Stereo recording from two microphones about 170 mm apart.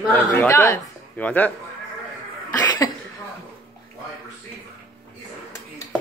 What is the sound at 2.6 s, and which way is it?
Cough, 20° left (ahead or behind).